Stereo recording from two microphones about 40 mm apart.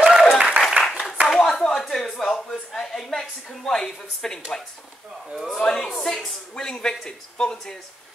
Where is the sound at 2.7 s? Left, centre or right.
Centre.